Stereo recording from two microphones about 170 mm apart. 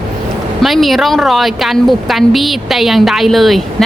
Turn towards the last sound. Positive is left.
turn(degrees=0)  # may be behind; listen again after turning